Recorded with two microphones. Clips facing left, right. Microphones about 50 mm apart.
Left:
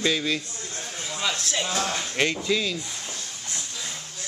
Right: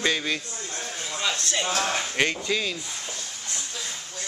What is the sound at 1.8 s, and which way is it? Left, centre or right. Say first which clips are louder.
Speech: right 1 dB; centre.